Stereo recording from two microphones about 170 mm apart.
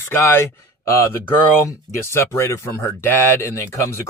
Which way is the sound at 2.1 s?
15° left (ahead or behind).